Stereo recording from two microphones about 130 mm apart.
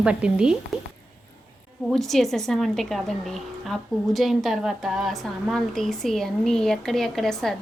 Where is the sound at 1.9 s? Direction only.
Centre (ahead or behind).